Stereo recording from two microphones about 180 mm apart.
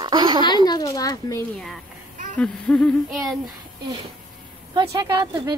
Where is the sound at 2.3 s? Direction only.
5° left (ahead or behind).